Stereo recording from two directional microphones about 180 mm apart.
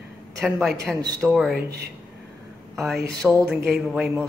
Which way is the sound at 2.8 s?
Centre (ahead or behind).